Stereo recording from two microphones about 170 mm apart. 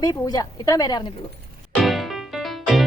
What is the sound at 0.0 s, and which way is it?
A woman's voice, 25° left (ahead or behind).